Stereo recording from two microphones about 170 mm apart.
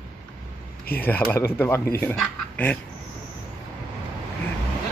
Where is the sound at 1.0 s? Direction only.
10° left (ahead or behind).